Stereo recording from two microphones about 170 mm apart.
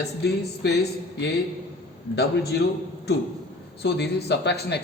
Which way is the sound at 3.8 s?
75° left (ahead or behind).